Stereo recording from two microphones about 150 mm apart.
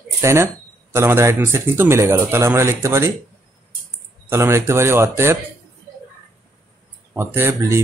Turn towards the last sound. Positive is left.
turn(degrees=-15)  # may be behind; listen again after turning